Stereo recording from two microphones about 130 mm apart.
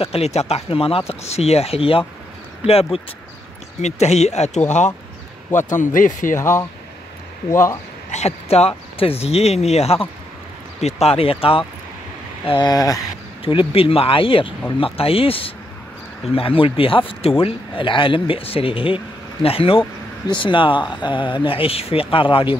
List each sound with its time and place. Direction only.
0.0 s speech: 50° left (ahead or behind)
3.8 s speech: 60° left (ahead or behind); by 6.3 s 85° left
6.3 s speech: 20° left (ahead or behind)
8.1 s speech: 55° left (ahead or behind)
12.4 s speech: 35° left (ahead or behind)
13.4 s speech: 45° left (ahead or behind)